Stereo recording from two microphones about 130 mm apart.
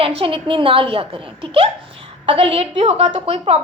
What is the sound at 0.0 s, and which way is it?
A woman's voice, 45° right (ahead or behind).